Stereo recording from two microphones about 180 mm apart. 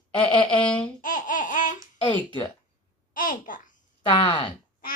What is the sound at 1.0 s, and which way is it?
Laughter, 45° left (ahead or behind).